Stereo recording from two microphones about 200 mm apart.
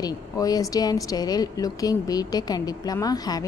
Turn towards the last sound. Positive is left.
turn(degrees=20)  # may be behind; listen again after turning